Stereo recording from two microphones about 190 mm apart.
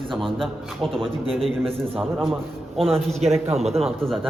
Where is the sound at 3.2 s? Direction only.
35° right (ahead or behind).